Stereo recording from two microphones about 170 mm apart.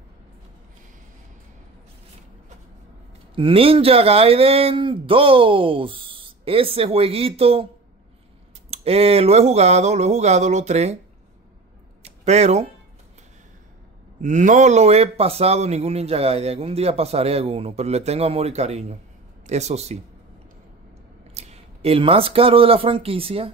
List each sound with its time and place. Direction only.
3.3 s speech: 30° right (ahead or behind)
8.6 s speech: 35° right (ahead or behind)
12.0 s a sound: 40° right (ahead or behind)
14.2 s speech: 45° right (ahead or behind)
21.4 s speech: 35° right (ahead or behind)